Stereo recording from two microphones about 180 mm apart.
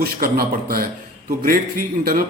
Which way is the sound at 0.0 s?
55° right (ahead or behind).